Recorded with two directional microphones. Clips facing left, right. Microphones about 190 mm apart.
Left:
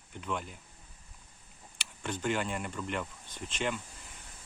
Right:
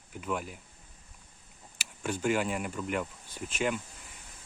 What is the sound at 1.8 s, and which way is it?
Speech, 10° right (ahead or behind).